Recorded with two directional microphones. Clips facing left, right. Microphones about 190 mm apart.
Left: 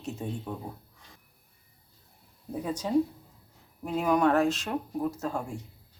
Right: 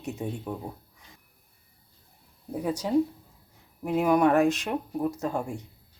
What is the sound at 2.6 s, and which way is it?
Speech, 10° right (ahead or behind).